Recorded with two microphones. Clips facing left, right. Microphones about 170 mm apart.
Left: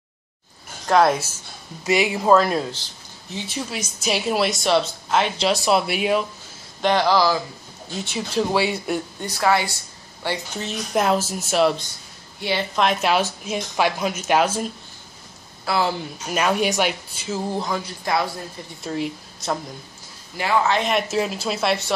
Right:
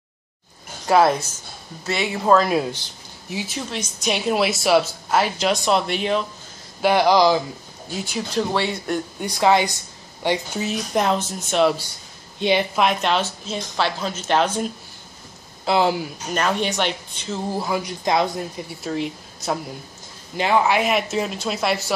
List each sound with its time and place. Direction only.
0.8 s speech: 5° right (ahead or behind)
1.9 s speech: 10° left (ahead or behind)
6.8 s speech: 10° right (ahead or behind)
8.1 s speech: 5° left (ahead or behind)
9.2 s a woman's voice: 20° right (ahead or behind)
10.6 s speech: centre (ahead or behind)
12.4 s a woman's voice: 20° right (ahead or behind)
12.7 s speech: centre (ahead or behind)
15.6 s speech: 20° right (ahead or behind)
16.3 s speech: 5° left (ahead or behind); by 18.4 s 20° right (ahead or behind)
18.8 s speech: centre (ahead or behind)
20.3 s speech: 20° right (ahead or behind); by 21.9 s centre (ahead or behind)